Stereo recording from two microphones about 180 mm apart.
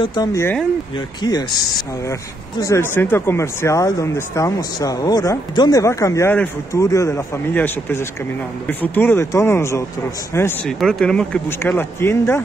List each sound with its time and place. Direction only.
0.0 s speech: 25° left (ahead or behind)
2.6 s speech: 15° left (ahead or behind)
10.8 s speech: 5° left (ahead or behind)